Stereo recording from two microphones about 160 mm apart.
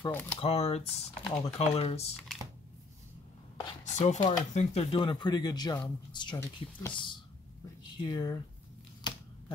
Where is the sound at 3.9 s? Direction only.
45° left (ahead or behind); by 6.3 s 30° left (ahead or behind).